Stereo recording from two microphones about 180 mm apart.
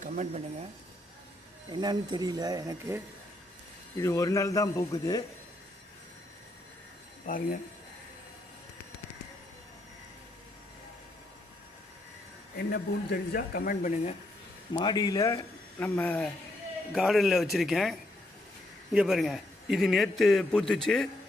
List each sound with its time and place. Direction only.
0.0 s speech: 45° right (ahead or behind)
1.7 s speech: 25° right (ahead or behind)
3.9 s a man's voice: 15° left (ahead or behind)
7.3 s speech: 50° left (ahead or behind)
12.5 s speech: 60° left (ahead or behind); by 14.2 s 40° left (ahead or behind)
14.7 s a man's voice: 25° left (ahead or behind)
15.8 s a man's voice: 10° left (ahead or behind)
18.9 s a man's voice: centre (ahead or behind)